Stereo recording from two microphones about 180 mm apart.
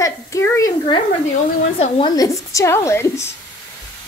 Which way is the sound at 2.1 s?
15° left (ahead or behind).